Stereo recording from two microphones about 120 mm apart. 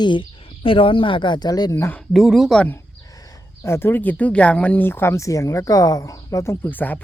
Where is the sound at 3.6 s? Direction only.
20° left (ahead or behind).